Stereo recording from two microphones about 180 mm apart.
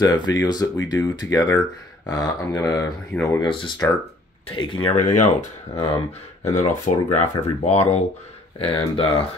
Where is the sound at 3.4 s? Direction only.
30° left (ahead or behind).